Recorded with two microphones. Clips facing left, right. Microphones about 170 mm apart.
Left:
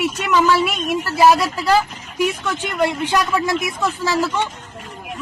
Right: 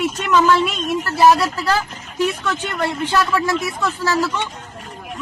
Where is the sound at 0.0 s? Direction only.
10° left (ahead or behind).